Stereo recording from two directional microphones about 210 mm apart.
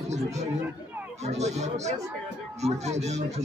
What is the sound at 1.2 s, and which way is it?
Speech, 30° right (ahead or behind).